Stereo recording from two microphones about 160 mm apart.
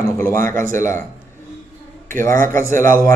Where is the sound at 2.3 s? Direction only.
60° right (ahead or behind).